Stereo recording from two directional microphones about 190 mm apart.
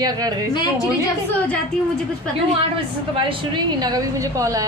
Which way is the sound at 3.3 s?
25° right (ahead or behind).